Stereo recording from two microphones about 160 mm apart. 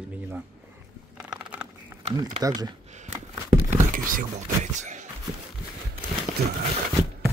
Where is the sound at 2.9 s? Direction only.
45° right (ahead or behind).